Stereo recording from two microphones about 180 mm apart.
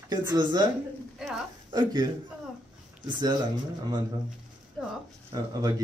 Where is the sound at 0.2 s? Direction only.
20° right (ahead or behind).